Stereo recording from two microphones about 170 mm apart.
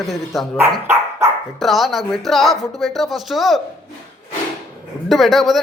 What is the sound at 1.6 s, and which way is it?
Speech, centre (ahead or behind).